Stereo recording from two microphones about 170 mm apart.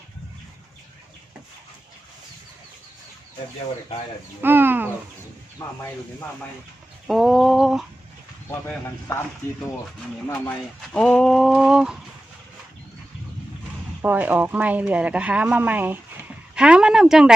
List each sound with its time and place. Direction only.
4.4 s speech: 10° right (ahead or behind)
5.6 s speech: 20° left (ahead or behind)
7.1 s a sound: centre (ahead or behind)
8.4 s speech: 10° left (ahead or behind)
10.8 s speech: 5° left (ahead or behind)
14.0 s speech: 10° right (ahead or behind)